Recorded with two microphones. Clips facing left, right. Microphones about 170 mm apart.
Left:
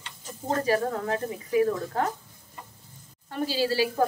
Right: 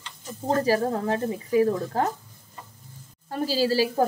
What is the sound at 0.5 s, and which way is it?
A woman's voice, 35° right (ahead or behind).